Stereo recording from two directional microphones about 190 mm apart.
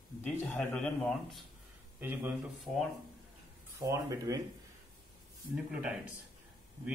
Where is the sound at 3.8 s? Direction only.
15° right (ahead or behind).